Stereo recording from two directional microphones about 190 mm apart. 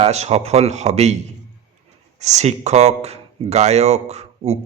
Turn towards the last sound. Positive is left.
turn(degrees=-35)  # may be behind; listen again after turning